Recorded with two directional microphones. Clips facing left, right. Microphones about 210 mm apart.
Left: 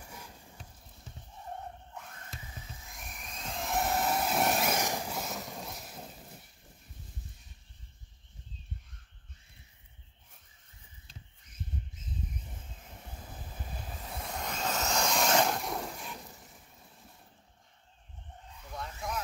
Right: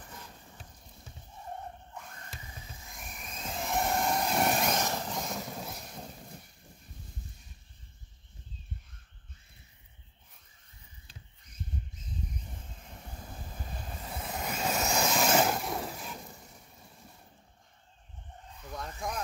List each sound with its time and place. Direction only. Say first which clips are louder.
0.0 s mechanisms: even; 10° left (ahead or behind)
2.8 s vehicle: right 1 dB; centre (ahead or behind)
13.0 s vehicle: right 2 dB; 5° left (ahead or behind)
18.8 s vehicle: right 1 dB; 45° right (ahead or behind)